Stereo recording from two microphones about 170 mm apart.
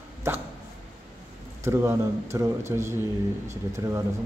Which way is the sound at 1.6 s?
15° right (ahead or behind).